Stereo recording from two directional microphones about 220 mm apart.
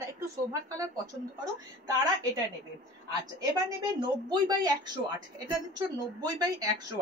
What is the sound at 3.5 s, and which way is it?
A woman's voice, 15° right (ahead or behind).